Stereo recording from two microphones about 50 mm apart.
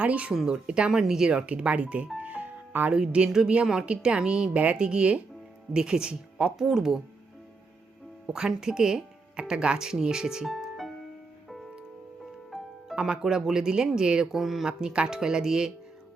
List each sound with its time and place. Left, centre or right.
0.0 s speech: right
2.1 s music: right
2.9 s speech: centre
8.3 s speech: centre
10.4 s music: centre
12.5 s music: centre
13.2 s speech: centre
14.3 s speech: centre
14.7 s speech: centre